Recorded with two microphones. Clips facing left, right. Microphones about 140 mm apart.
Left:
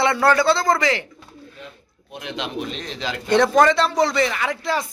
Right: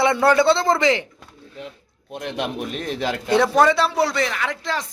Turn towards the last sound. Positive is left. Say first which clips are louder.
# left 2 dB
turn(degrees=5)  # may be behind; listen again after turning